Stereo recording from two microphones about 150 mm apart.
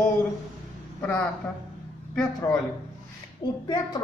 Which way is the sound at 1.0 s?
5° left (ahead or behind).